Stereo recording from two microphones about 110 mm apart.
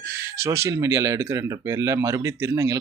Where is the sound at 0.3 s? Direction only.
25° right (ahead or behind).